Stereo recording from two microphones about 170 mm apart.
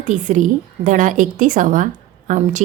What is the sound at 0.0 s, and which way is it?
A woman's voice, 45° right (ahead or behind).